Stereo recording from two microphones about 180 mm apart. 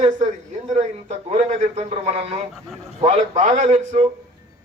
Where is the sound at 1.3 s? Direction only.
40° right (ahead or behind).